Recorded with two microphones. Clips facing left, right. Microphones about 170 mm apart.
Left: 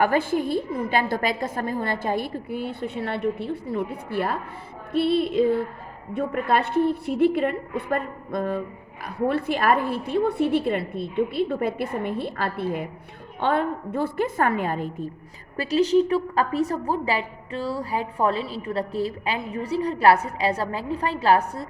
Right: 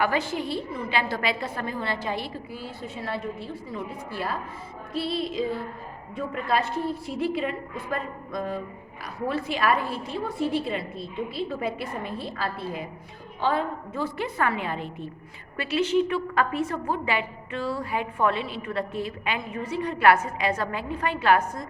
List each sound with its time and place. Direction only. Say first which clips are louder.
0.0 s a woman's voice: left 5 dB; 50° left (ahead or behind); by 21.7 s 35° left (ahead or behind)